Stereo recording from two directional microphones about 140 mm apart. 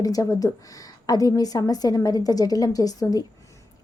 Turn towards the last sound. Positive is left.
turn(degrees=25)  # may be behind; listen again after turning